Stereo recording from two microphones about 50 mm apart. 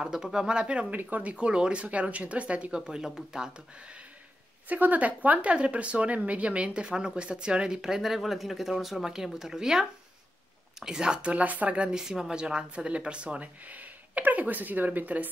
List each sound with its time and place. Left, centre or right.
0.0 s speech: centre
0.9 s speech: right
1.3 s speech: centre
2.9 s speech: centre
4.6 s speech: right; by 11.3 s centre
11.3 s speech: right
11.7 s speech: centre